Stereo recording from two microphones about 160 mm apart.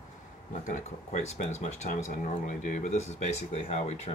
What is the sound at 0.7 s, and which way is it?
Speech, 45° left (ahead or behind).